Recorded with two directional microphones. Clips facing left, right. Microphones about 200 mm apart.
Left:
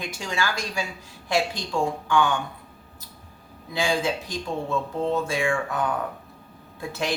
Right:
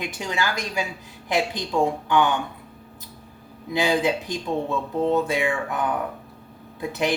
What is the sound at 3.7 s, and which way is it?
A woman's voice, 20° right (ahead or behind).